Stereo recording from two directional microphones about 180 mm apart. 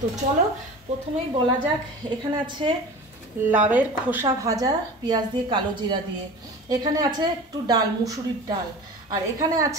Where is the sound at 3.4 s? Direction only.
10° right (ahead or behind).